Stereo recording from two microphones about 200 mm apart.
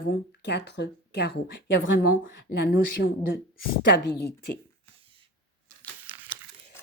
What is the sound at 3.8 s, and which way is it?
Speech, 60° left (ahead or behind).